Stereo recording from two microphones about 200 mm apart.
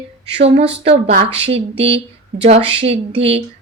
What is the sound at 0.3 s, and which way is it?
A woman's voice, 30° right (ahead or behind).